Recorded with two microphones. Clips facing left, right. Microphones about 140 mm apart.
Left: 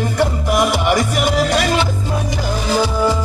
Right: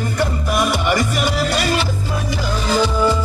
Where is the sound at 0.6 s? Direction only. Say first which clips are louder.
Left 2 dB; 15° left (ahead or behind).